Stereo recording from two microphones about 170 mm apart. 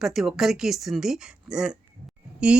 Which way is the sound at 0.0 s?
Centre (ahead or behind).